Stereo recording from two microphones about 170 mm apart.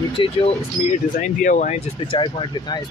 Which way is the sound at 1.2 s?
50° left (ahead or behind).